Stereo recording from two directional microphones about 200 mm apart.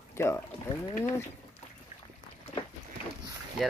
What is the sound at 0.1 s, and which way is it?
Speech, 15° left (ahead or behind).